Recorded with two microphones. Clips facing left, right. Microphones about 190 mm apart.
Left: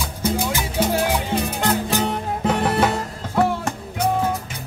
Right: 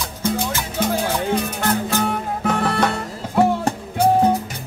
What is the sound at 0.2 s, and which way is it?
Music, 5° left (ahead or behind).